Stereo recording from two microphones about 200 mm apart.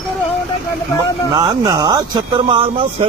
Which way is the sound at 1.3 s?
20° right (ahead or behind).